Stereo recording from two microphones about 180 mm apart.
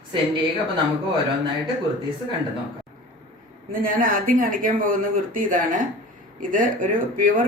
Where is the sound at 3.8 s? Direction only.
50° right (ahead or behind).